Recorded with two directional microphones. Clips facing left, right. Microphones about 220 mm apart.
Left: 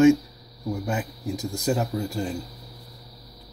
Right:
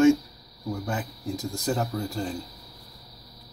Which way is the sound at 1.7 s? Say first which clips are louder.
Left 3 dB; 10° left (ahead or behind).